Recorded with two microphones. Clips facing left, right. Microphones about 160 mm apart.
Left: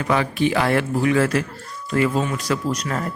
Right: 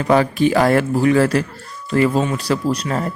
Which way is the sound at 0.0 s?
40° right (ahead or behind).